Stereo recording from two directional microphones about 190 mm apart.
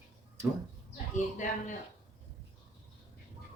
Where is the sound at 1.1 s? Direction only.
40° left (ahead or behind).